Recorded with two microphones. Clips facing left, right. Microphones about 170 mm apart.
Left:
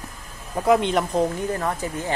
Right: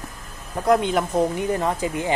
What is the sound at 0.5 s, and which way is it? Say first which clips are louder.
Speech: even; centre (ahead or behind).